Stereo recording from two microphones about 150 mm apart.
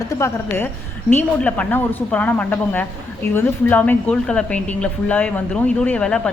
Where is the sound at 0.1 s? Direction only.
15° left (ahead or behind).